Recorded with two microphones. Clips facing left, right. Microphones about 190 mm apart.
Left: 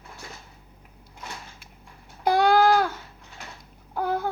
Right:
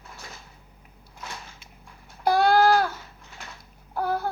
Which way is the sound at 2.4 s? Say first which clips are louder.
Even; 15° left (ahead or behind).